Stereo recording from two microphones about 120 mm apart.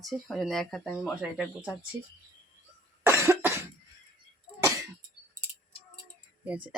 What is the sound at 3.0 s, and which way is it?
Cough, 25° right (ahead or behind).